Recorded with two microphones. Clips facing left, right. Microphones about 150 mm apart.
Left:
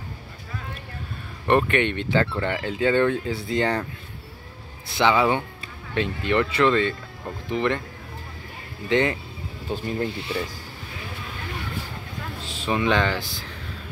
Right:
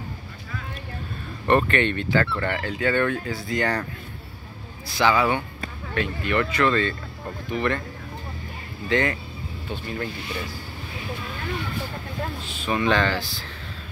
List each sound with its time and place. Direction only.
1.5 s speech: 15° left (ahead or behind)
4.8 s speech: 25° left (ahead or behind)
8.8 s speech: 20° left (ahead or behind)
12.7 s speech: 15° left (ahead or behind)